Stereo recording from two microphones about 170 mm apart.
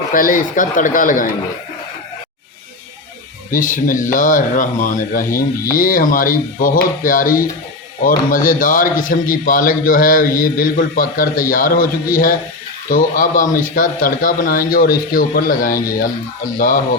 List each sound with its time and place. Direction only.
0.1 s speech: 55° left (ahead or behind)
3.5 s a man's voice: 50° left (ahead or behind)